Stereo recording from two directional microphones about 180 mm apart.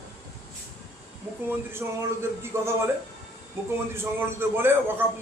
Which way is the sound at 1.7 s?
15° right (ahead or behind).